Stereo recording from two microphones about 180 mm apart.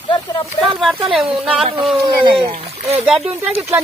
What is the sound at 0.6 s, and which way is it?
Speech, centre (ahead or behind).